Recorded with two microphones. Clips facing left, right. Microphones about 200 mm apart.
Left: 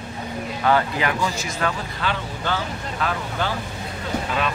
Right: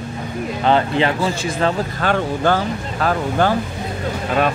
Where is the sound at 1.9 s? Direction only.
50° right (ahead or behind).